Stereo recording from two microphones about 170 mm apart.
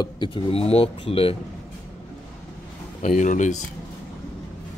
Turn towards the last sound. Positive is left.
turn(degrees=45)  # may be behind; listen again after turning